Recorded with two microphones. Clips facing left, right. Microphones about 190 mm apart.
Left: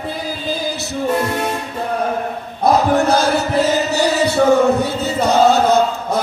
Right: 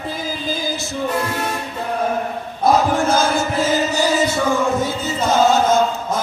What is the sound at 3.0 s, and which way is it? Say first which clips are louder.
Music: left 2 dB; 65° left (ahead or behind).